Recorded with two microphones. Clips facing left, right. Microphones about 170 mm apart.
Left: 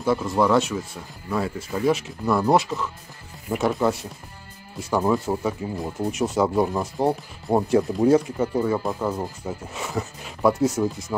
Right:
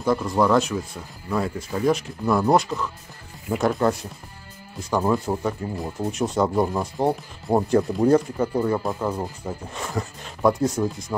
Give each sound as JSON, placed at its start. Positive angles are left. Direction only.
{"t": 0.0, "sound": "speech", "side_deg": 5}